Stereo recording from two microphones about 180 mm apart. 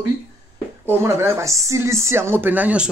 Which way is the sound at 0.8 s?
15° right (ahead or behind).